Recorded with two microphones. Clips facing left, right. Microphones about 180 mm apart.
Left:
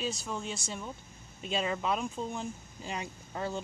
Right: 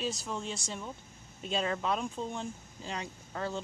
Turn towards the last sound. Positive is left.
turn(degrees=15)  # may be behind; listen again after turning